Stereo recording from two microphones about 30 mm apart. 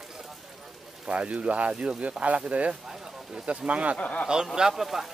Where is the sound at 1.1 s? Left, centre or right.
Right.